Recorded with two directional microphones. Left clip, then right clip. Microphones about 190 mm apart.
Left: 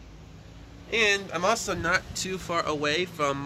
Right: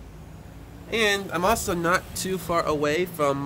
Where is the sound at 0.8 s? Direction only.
10° right (ahead or behind).